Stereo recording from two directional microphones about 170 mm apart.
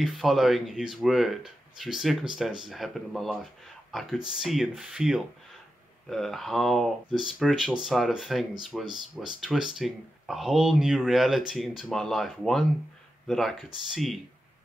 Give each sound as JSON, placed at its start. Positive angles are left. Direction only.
{"t": 0.0, "sound": "speech", "side_deg": 0}